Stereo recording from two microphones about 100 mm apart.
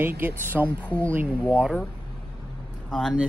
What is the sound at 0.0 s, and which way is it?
Speech, 20° right (ahead or behind).